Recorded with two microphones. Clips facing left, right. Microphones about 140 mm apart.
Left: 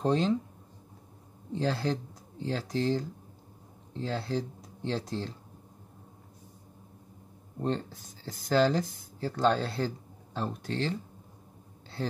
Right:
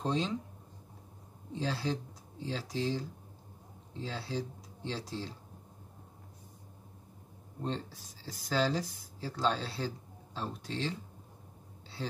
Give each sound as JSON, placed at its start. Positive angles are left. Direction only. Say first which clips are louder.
{"t": 0.0, "sound": "speech", "louder": "left 6 dB", "side_deg": 50}
{"t": 1.6, "sound": "speech", "louder": "left 4 dB", "side_deg": 50}
{"t": 7.6, "sound": "speech", "louder": "left 6 dB", "side_deg": 50}